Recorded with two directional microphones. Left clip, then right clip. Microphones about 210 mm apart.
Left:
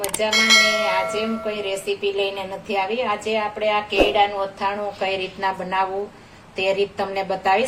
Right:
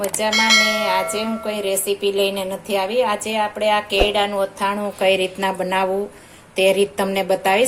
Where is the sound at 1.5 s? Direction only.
50° right (ahead or behind).